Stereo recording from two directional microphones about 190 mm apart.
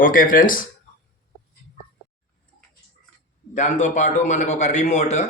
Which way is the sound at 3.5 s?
40° left (ahead or behind).